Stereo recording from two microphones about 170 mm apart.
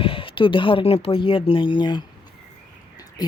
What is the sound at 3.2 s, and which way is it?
Speech, 25° left (ahead or behind).